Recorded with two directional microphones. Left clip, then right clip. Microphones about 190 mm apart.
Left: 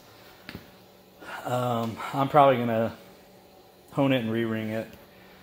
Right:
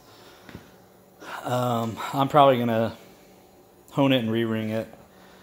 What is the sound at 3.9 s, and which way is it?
Speech, 25° right (ahead or behind).